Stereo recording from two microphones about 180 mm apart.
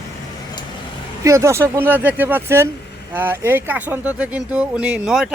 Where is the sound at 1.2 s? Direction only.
15° right (ahead or behind).